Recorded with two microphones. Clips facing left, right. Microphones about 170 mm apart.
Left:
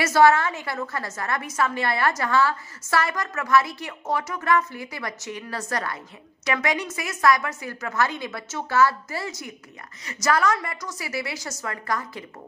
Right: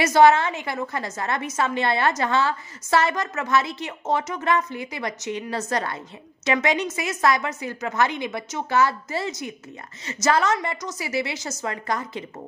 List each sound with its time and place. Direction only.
0.0 s a woman's voice: 20° right (ahead or behind)